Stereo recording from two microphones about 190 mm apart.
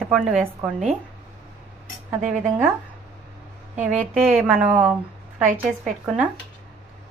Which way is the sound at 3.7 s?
40° right (ahead or behind).